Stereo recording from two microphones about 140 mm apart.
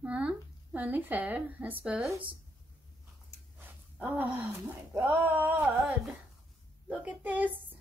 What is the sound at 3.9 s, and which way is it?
A woman's voice, 10° right (ahead or behind).